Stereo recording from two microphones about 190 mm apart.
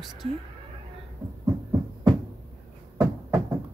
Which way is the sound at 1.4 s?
15° right (ahead or behind).